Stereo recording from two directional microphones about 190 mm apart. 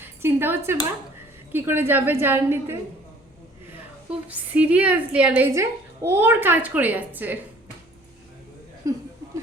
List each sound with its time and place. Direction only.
0.0 s a woman's voice: 10° right (ahead or behind)
4.3 s a woman's voice: 5° right (ahead or behind)